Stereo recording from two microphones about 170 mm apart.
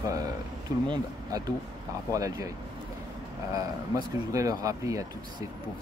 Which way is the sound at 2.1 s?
20° right (ahead or behind).